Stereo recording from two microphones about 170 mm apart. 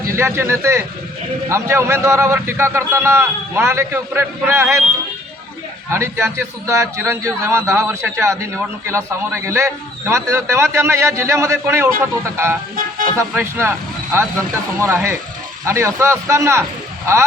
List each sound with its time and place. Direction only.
0.2 s speech: 15° right (ahead or behind)
5.9 s speech: 15° right (ahead or behind)
12.7 s music: 55° right (ahead or behind)
13.1 s speech: 15° right (ahead or behind)